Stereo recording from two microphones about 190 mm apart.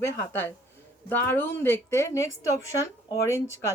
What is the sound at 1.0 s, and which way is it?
A woman's voice, 10° left (ahead or behind).